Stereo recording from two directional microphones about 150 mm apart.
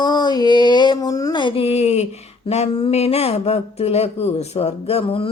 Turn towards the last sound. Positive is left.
turn(degrees=40)  # may be behind; listen again after turning